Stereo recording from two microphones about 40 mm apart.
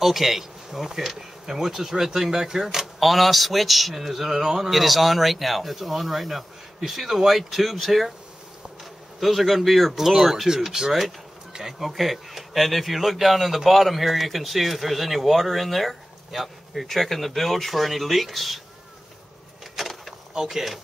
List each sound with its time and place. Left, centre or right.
0.0 s speech: centre
9.2 s speech: centre
11.9 s speech: centre
19.7 s a sound: centre